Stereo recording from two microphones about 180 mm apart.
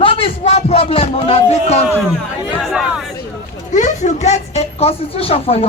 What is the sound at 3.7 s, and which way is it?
Speech, 45° left (ahead or behind).